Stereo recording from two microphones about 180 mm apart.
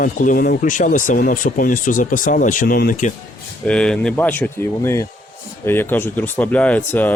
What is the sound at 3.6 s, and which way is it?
Speech, 5° left (ahead or behind).